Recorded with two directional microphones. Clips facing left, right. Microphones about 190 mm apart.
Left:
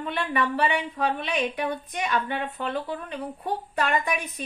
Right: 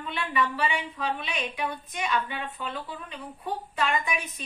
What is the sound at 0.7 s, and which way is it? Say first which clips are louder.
Speech: left 4 dB; 60° left (ahead or behind).